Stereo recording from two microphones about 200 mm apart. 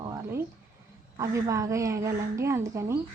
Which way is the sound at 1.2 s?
15° right (ahead or behind).